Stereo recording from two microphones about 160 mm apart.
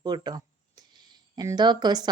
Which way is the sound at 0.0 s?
25° right (ahead or behind).